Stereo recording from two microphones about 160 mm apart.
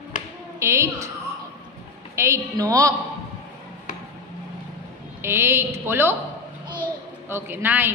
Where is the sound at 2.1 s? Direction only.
15° right (ahead or behind).